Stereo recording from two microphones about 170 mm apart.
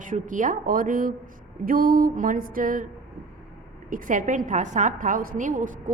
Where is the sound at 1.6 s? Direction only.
55° right (ahead or behind).